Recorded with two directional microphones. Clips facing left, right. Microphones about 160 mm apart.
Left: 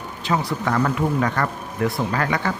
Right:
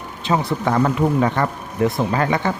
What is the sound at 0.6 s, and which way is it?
Speech, 25° right (ahead or behind).